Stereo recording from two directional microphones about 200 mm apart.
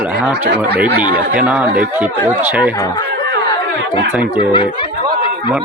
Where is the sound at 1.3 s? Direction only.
5° right (ahead or behind).